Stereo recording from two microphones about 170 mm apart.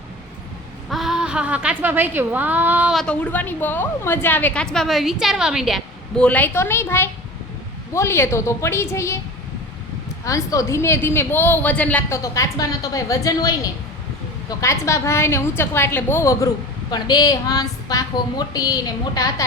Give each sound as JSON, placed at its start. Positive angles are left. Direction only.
{"t": 0.9, "sound": "a woman's voice", "side_deg": 0}
{"t": 10.2, "sound": "a woman's voice", "side_deg": 20}